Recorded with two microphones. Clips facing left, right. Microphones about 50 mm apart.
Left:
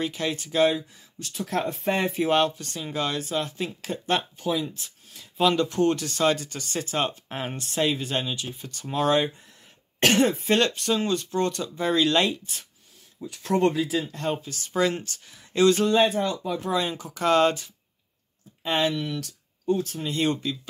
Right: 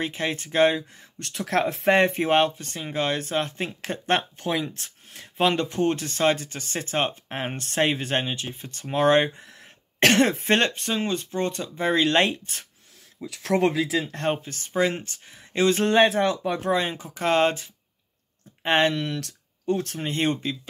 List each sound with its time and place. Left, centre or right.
0.0 s speech: right
1.3 s speech: right
2.0 s speech: right
2.3 s speech: right
5.4 s speech: right
7.5 s speech: right
9.4 s cough: right
10.6 s speech: right
13.2 s speech: right
14.7 s speech: right
15.8 s speech: right
16.6 s speech: right
18.6 s speech: right